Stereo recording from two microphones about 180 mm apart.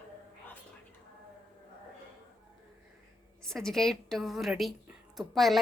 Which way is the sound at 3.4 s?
Centre (ahead or behind).